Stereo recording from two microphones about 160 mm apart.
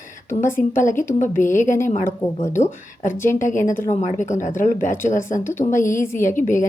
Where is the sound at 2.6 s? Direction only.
50° left (ahead or behind).